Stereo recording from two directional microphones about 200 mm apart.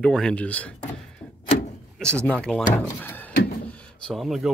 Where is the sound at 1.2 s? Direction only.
25° left (ahead or behind).